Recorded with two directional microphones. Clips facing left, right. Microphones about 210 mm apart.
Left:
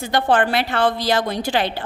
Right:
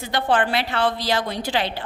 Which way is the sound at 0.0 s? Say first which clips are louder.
Left 3 dB; 45° left (ahead or behind).